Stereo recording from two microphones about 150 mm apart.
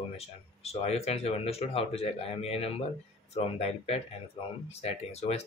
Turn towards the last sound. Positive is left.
turn(degrees=45)  # may be behind; listen again after turning